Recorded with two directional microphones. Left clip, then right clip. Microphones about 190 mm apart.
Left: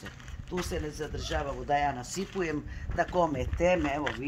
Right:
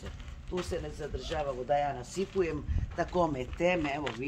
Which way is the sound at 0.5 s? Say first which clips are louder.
Left 1 dB; 60° left (ahead or behind).